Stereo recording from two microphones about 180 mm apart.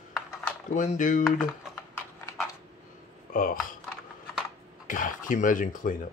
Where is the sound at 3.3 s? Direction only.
50° left (ahead or behind).